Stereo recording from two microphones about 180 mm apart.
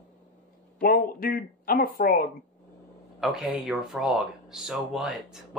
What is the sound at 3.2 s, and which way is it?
Speech, centre (ahead or behind).